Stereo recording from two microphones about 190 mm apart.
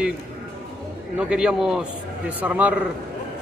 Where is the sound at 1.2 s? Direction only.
5° right (ahead or behind).